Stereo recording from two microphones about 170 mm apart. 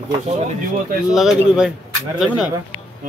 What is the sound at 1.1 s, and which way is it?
Speech, 5° right (ahead or behind).